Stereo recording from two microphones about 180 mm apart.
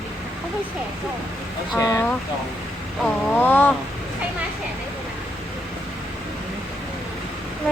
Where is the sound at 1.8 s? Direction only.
15° left (ahead or behind).